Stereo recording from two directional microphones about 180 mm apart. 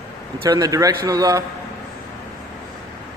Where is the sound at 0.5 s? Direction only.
20° right (ahead or behind).